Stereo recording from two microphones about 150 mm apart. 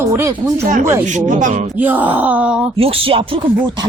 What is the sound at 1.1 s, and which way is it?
Speech, 55° right (ahead or behind).